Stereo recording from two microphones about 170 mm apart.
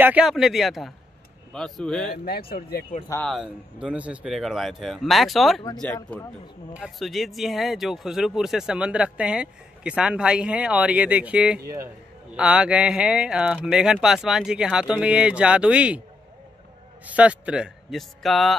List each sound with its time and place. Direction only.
0.0 s speech: 5° right (ahead or behind)
3.3 s speech: 5° right (ahead or behind)
6.7 s speech: centre (ahead or behind)
11.6 s a man's voice: 20° right (ahead or behind)
12.4 s speech: 5° right (ahead or behind)
17.0 s a man's voice: 10° right (ahead or behind)